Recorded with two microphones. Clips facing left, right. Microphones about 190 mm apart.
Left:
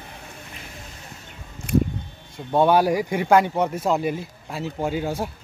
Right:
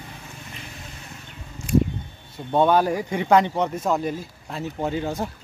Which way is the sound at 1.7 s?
60° left (ahead or behind).